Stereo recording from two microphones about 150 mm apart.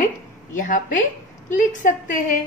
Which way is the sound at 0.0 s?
60° left (ahead or behind).